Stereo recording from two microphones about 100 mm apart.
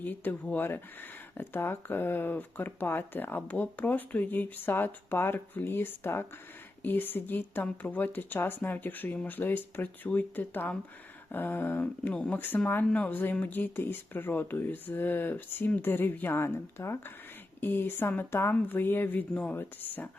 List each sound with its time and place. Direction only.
0.0 s speech: 15° left (ahead or behind)